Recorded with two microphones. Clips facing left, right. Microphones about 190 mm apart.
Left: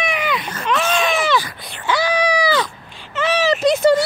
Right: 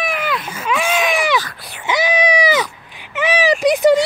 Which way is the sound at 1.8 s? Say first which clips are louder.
Right 1 dB; 20° right (ahead or behind).